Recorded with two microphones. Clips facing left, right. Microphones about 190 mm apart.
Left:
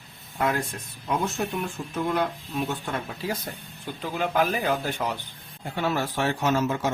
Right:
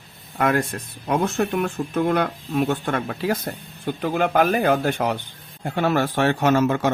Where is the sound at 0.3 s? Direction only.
70° right (ahead or behind).